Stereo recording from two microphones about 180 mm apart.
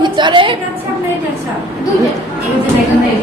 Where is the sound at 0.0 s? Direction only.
25° right (ahead or behind).